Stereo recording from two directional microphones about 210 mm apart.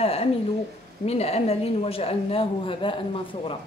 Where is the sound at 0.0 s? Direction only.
30° left (ahead or behind).